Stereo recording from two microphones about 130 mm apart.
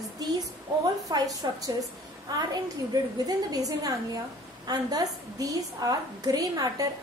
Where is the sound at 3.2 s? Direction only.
30° right (ahead or behind).